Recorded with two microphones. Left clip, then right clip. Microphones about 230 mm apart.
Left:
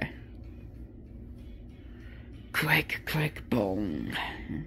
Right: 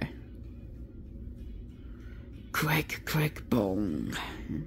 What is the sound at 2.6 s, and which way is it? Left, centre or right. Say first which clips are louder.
Speech: left 4 dB; centre.